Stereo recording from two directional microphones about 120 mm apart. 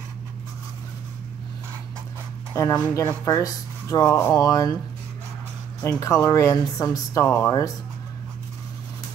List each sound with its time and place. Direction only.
2.5 s speech: 25° left (ahead or behind)
5.8 s speech: 30° left (ahead or behind)